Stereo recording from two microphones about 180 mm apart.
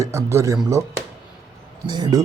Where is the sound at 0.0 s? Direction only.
15° right (ahead or behind).